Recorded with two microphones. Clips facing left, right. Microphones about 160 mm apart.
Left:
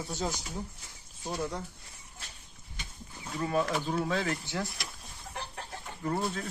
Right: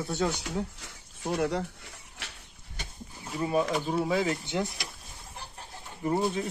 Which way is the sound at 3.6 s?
5° right (ahead or behind).